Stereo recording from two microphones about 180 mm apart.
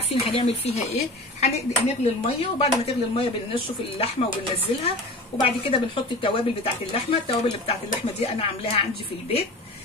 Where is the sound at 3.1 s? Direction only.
35° left (ahead or behind).